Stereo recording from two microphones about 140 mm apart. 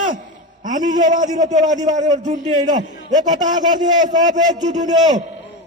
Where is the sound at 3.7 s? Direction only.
30° right (ahead or behind).